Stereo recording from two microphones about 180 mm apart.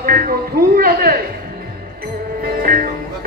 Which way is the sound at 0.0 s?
55° right (ahead or behind).